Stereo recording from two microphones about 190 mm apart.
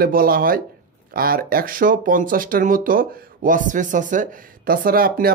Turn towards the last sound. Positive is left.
turn(degrees=-50)  # may be behind; listen again after turning